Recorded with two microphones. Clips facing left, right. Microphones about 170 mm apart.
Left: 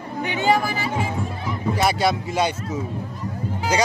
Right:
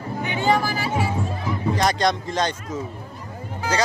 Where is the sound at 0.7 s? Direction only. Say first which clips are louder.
Even; centre (ahead or behind).